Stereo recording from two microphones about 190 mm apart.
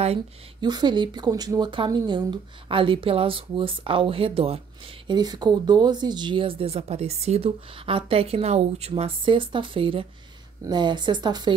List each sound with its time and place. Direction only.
0.0 s speech: 30° right (ahead or behind)